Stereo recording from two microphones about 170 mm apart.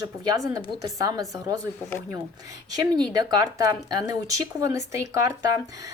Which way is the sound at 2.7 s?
20° right (ahead or behind).